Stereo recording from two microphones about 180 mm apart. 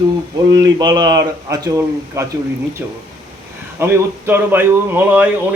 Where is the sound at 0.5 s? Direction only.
25° right (ahead or behind).